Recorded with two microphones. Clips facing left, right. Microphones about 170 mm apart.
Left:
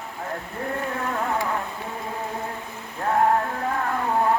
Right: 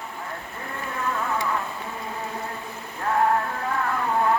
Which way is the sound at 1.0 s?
35° left (ahead or behind).